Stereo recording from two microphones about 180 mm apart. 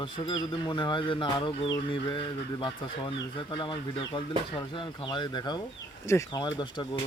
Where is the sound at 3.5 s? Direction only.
25° left (ahead or behind).